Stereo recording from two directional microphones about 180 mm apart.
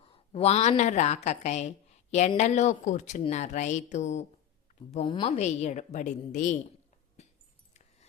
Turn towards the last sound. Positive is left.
turn(degrees=40)  # may be behind; listen again after turning